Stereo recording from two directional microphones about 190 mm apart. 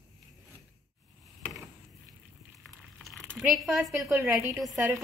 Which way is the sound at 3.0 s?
Centre (ahead or behind).